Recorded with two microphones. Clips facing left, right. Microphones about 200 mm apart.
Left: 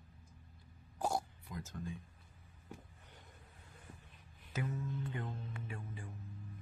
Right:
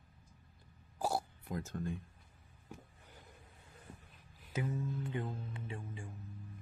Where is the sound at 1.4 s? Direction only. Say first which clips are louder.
Right 5 dB; 55° right (ahead or behind).